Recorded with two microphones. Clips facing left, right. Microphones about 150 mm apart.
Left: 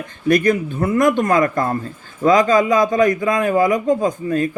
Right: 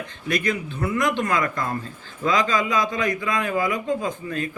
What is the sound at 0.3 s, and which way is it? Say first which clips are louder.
A man's voice: left 10 dB; 50° left (ahead or behind).